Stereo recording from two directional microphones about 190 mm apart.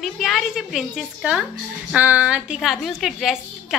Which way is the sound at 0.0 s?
Centre (ahead or behind).